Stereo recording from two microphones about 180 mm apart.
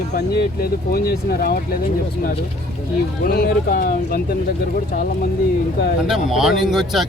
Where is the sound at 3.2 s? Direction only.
55° left (ahead or behind).